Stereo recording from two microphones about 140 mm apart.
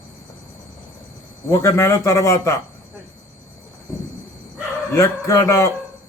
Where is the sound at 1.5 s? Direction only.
20° left (ahead or behind).